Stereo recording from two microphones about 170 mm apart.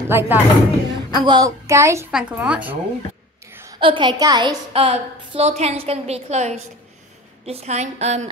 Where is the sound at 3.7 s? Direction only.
30° right (ahead or behind).